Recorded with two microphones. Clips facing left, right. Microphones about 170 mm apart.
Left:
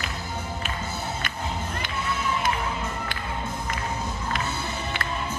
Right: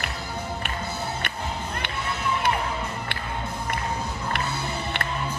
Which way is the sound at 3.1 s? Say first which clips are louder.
Right 1 dB; 65° right (ahead or behind).